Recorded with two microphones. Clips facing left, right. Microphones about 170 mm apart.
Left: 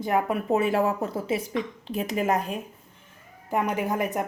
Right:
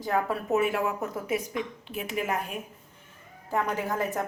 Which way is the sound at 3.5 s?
15° left (ahead or behind).